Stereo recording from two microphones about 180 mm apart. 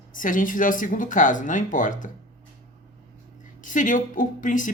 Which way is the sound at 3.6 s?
45° left (ahead or behind).